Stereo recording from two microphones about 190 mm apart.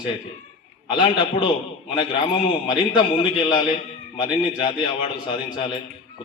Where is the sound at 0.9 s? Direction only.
25° left (ahead or behind).